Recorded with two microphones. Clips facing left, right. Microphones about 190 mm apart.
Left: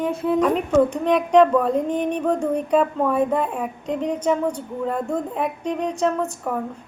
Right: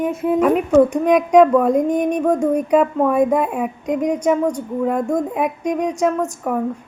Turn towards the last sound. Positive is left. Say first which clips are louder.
# right 3 dB
turn(degrees=-10)  # may be behind; listen again after turning